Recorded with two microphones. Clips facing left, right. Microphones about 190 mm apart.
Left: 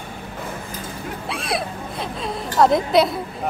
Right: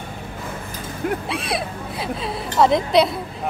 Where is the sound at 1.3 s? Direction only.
Centre (ahead or behind).